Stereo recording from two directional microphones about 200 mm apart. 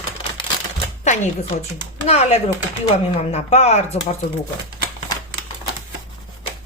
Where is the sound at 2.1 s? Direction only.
35° left (ahead or behind).